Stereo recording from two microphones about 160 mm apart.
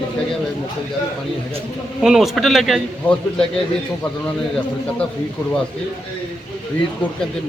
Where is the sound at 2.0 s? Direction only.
Centre (ahead or behind).